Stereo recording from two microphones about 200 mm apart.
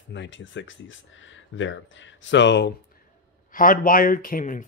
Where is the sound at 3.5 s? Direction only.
45° left (ahead or behind).